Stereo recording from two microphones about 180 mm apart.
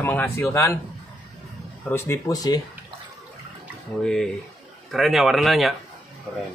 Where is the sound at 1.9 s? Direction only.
15° left (ahead or behind).